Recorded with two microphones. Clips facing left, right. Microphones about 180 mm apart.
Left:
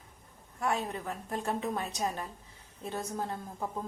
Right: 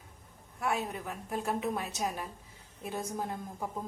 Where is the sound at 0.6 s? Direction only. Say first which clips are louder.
Left 1 dB; 5° right (ahead or behind).